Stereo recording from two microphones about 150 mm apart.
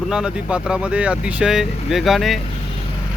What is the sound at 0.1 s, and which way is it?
Speech, 5° right (ahead or behind).